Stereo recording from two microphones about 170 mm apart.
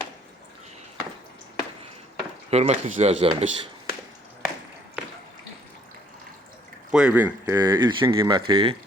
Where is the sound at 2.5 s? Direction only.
40° right (ahead or behind).